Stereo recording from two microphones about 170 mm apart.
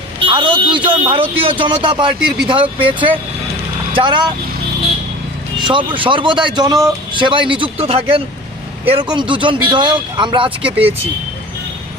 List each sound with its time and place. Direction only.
0.3 s vehicle: 30° right (ahead or behind)
0.9 s speech: 30° right (ahead or behind)
5.5 s speech: 25° right (ahead or behind)